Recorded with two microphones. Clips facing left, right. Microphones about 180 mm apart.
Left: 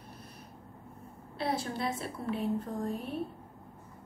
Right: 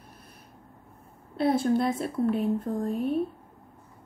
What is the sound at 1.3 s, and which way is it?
Speech, 55° right (ahead or behind).